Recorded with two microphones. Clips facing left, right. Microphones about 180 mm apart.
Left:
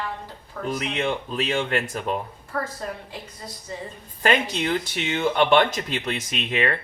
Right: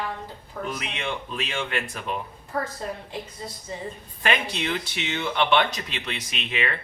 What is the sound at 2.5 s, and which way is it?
Speech, 15° right (ahead or behind).